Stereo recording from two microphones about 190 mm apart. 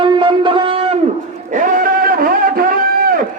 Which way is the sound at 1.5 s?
45° right (ahead or behind).